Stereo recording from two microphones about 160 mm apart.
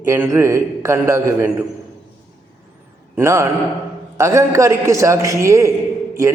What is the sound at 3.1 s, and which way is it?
A man's voice, 15° right (ahead or behind).